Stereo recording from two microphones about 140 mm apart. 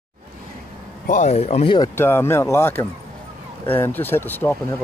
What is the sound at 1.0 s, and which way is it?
Speech, 60° left (ahead or behind).